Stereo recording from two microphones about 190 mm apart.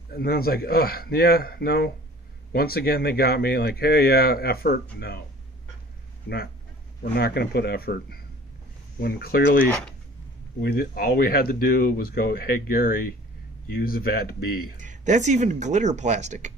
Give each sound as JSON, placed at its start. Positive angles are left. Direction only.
{"t": 0.1, "sound": "speech", "side_deg": 55}
{"t": 6.2, "sound": "speech", "side_deg": 55}
{"t": 14.8, "sound": "speech", "side_deg": -40}